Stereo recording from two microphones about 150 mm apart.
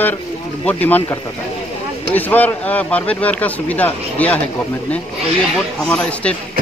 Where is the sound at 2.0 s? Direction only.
10° left (ahead or behind).